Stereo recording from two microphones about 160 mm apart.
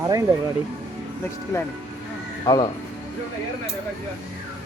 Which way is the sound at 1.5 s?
20° left (ahead or behind).